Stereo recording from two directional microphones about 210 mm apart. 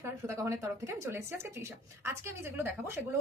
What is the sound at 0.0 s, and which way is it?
Speech, 15° right (ahead or behind).